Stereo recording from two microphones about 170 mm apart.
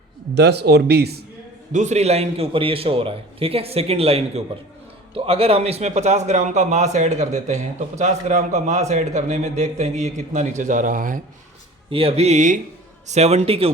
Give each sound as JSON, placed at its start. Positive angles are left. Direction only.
{"t": 0.3, "sound": "speech", "side_deg": -80}
{"t": 1.7, "sound": "a man's voice", "side_deg": -45}
{"t": 11.9, "sound": "a man's voice", "side_deg": -35}